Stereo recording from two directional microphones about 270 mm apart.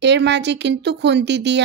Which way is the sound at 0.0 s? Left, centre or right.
Right.